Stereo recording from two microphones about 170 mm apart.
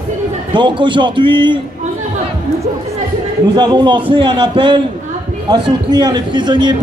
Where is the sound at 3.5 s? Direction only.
25° right (ahead or behind).